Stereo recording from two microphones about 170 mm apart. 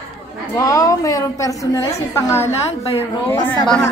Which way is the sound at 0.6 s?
20° left (ahead or behind).